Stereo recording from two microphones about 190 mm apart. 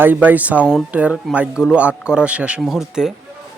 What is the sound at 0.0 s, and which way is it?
Speech, 10° right (ahead or behind).